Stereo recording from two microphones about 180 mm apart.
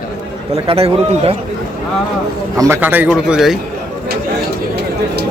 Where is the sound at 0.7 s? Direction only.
35° right (ahead or behind).